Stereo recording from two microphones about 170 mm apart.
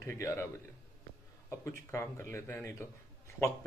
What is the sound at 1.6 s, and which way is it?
Speech, 15° left (ahead or behind).